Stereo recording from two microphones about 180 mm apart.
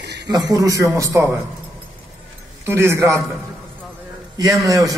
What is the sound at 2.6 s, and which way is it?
Speech, 15° right (ahead or behind).